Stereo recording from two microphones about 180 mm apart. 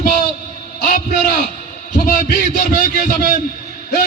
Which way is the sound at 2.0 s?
50° left (ahead or behind).